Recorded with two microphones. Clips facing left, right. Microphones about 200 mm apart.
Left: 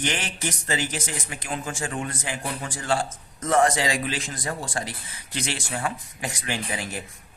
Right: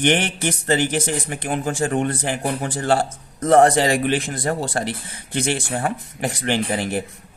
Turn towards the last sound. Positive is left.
turn(degrees=-60)  # may be behind; listen again after turning